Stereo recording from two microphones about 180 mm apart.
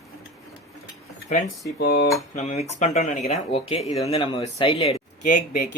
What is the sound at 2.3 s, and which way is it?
Speech, 40° left (ahead or behind).